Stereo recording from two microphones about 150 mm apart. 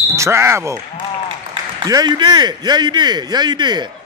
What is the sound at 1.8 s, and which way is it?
A man's voice, 25° right (ahead or behind).